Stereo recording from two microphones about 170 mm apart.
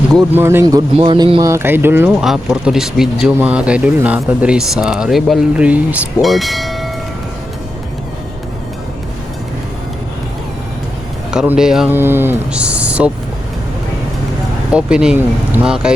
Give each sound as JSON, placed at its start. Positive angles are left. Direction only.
{"t": 0.3, "sound": "speech", "side_deg": -15}
{"t": 0.9, "sound": "speech", "side_deg": -30}
{"t": 11.3, "sound": "speech", "side_deg": -5}
{"t": 14.7, "sound": "speech", "side_deg": -5}